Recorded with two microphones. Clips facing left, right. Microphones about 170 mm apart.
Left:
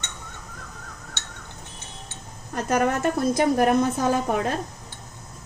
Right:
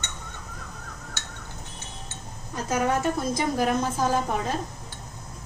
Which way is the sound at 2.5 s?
65° left (ahead or behind).